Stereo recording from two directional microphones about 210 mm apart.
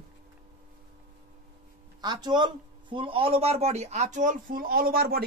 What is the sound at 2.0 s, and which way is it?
Speech, 20° right (ahead or behind).